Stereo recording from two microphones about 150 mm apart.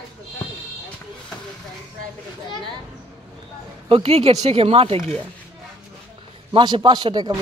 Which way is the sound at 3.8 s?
40° right (ahead or behind).